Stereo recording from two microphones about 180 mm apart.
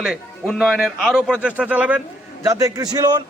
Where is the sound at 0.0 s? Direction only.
Centre (ahead or behind); by 3.2 s 20° right (ahead or behind).